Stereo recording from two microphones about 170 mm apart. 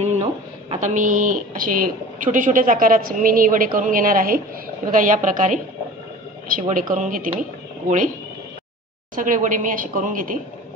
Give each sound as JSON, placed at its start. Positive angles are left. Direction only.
{"t": 0.0, "sound": "speech", "side_deg": -40}
{"t": 9.1, "sound": "speech", "side_deg": -50}